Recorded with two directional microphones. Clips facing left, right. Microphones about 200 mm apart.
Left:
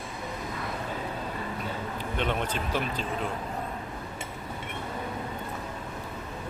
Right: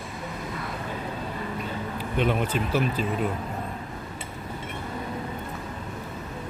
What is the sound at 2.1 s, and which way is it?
Speech, 10° right (ahead or behind).